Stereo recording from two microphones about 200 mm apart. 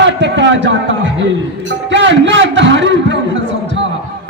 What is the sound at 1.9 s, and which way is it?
A man's voice, 65° right (ahead or behind).